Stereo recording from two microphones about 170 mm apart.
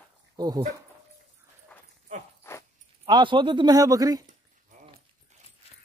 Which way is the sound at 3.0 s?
30° right (ahead or behind).